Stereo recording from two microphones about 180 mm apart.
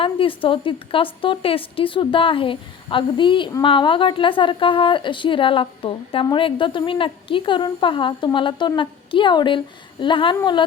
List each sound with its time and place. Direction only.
0.0 s a woman's voice: 30° left (ahead or behind)